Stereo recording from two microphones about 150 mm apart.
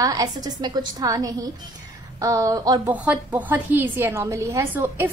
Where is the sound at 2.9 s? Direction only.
10° right (ahead or behind).